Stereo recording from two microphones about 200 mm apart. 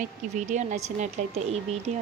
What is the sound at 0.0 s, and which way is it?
Speech, 40° right (ahead or behind).